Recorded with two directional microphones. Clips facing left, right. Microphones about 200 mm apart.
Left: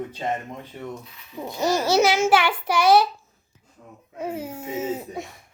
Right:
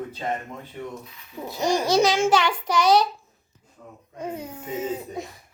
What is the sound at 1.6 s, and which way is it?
Speech, 15° right (ahead or behind).